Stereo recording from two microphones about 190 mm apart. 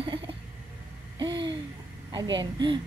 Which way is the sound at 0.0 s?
25° right (ahead or behind).